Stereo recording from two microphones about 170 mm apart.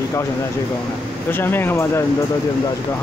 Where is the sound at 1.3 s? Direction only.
10° left (ahead or behind).